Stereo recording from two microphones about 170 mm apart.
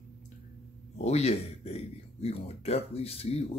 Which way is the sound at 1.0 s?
40° left (ahead or behind).